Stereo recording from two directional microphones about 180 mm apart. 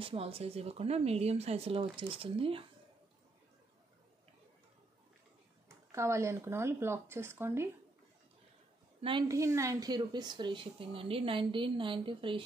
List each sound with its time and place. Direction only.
0.0 s speech: 30° right (ahead or behind)
5.9 s speech: 15° right (ahead or behind)
9.3 s a woman's voice: 15° right (ahead or behind)